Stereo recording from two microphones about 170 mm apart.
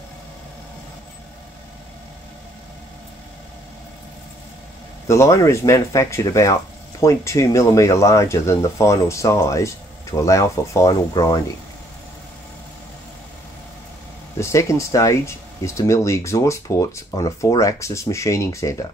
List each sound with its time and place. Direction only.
5.0 s speech: 15° left (ahead or behind)
14.4 s speech: 15° left (ahead or behind)